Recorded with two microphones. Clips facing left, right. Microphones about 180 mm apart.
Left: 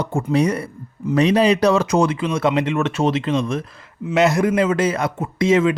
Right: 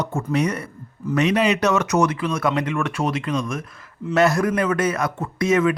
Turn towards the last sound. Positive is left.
turn(degrees=25)  # may be behind; listen again after turning